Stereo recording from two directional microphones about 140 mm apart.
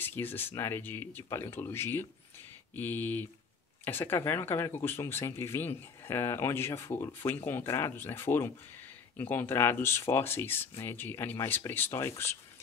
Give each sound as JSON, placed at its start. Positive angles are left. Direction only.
{"t": 0.0, "sound": "speech", "side_deg": 15}